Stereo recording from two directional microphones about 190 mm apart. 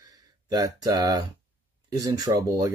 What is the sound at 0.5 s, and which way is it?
Speech, 20° right (ahead or behind).